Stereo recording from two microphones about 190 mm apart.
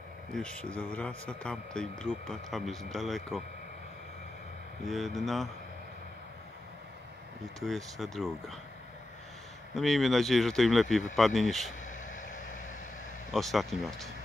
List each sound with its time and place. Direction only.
0.3 s a man's voice: 5° left (ahead or behind)
4.8 s a man's voice: centre (ahead or behind)
7.6 s a man's voice: centre (ahead or behind)
9.8 s a man's voice: centre (ahead or behind)
11.8 s a sound: 40° left (ahead or behind)
13.3 s a man's voice: centre (ahead or behind)